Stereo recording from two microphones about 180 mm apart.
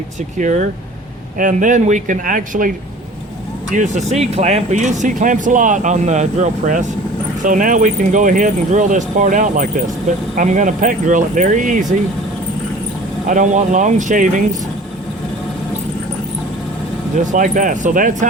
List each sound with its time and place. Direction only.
0.3 s speech: 45° right (ahead or behind)
13.2 s speech: 45° right (ahead or behind)
17.3 s speech: 45° right (ahead or behind)